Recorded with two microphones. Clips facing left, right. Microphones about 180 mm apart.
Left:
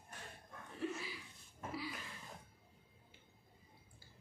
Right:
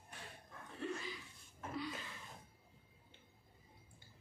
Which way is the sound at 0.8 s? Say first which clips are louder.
Left 1 dB; 5° left (ahead or behind).